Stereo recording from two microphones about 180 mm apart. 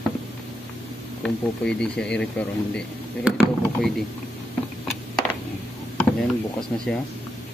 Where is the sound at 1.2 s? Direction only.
5° left (ahead or behind).